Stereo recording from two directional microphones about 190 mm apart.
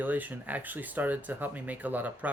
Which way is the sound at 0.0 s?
10° right (ahead or behind).